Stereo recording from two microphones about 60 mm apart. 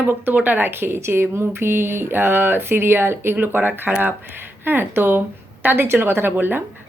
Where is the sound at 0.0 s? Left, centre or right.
Right.